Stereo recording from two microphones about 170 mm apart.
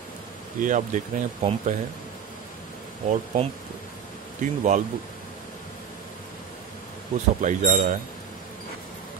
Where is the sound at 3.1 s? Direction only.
45° right (ahead or behind).